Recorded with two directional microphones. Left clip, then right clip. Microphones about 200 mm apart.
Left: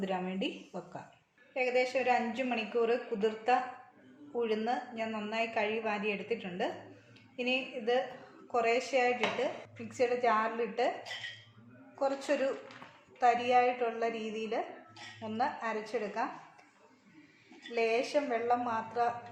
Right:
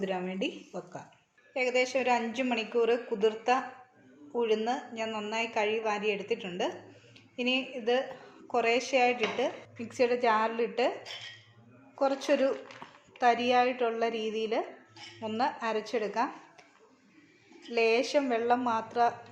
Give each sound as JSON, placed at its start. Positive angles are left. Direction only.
{"t": 0.0, "sound": "a woman's voice", "side_deg": -20}
{"t": 1.5, "sound": "a woman's voice", "side_deg": -30}
{"t": 11.9, "sound": "speech", "side_deg": -40}
{"t": 17.7, "sound": "speech", "side_deg": -40}